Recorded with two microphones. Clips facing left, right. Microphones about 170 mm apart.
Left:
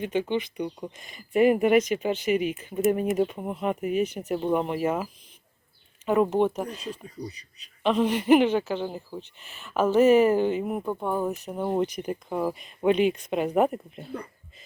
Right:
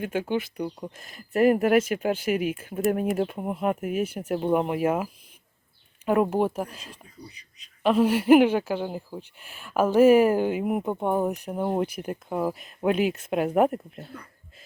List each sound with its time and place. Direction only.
0.0 s speech: 5° right (ahead or behind)
6.1 s speech: 10° right (ahead or behind)
7.3 s a man's voice: 35° left (ahead or behind)
7.9 s speech: 5° right (ahead or behind)